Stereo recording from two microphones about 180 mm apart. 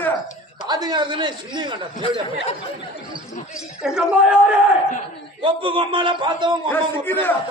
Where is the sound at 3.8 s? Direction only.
5° right (ahead or behind).